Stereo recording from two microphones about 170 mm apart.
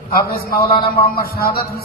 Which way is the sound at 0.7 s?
60° left (ahead or behind).